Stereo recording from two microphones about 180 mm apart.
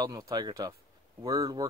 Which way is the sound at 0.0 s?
20° right (ahead or behind).